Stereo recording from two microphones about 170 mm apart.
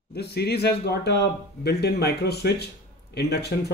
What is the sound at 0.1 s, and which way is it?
Speech, 70° left (ahead or behind).